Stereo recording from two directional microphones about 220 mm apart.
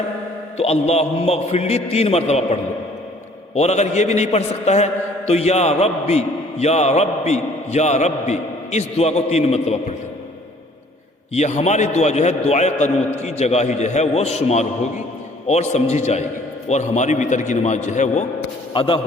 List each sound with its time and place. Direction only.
0.5 s a man's voice: 30° left (ahead or behind)
11.3 s a man's voice: 30° left (ahead or behind)